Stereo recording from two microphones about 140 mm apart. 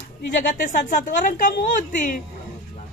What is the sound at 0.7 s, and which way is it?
A woman's voice, 70° left (ahead or behind).